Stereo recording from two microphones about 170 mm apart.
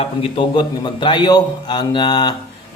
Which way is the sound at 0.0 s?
30° left (ahead or behind).